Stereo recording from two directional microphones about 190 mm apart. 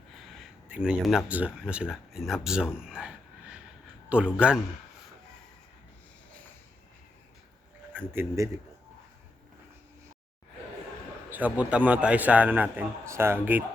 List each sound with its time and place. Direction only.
0.2 s speech: centre (ahead or behind)
4.1 s a man's voice: 5° right (ahead or behind)
7.9 s a man's voice: 10° right (ahead or behind)
11.3 s a man's voice: 10° right (ahead or behind)